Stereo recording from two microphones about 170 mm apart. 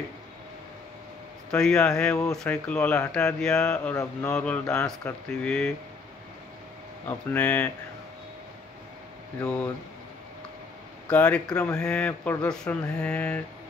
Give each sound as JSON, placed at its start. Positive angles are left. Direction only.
{"t": 1.5, "sound": "speech", "side_deg": 5}
{"t": 3.9, "sound": "speech", "side_deg": 20}
{"t": 7.1, "sound": "speech", "side_deg": 10}
{"t": 11.1, "sound": "speech", "side_deg": 5}